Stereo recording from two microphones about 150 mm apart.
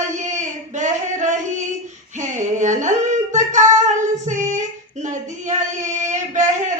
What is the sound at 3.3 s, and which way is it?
Singing, 55° right (ahead or behind).